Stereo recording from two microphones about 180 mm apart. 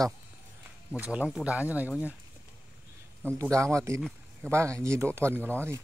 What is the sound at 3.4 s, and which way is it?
Speech, 15° right (ahead or behind).